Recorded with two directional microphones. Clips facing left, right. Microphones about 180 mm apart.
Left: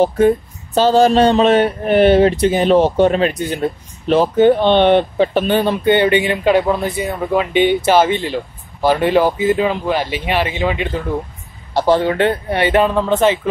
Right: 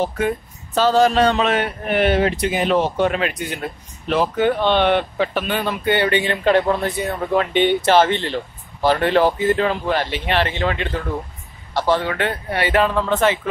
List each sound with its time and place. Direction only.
0.7 s a man's voice: 30° left (ahead or behind); by 10.9 s 10° left (ahead or behind)
11.7 s a man's voice: 30° left (ahead or behind)